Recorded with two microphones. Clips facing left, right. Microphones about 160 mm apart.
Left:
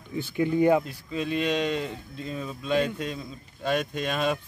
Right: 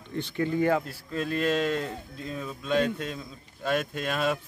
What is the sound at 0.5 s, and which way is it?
Speech, 15° left (ahead or behind).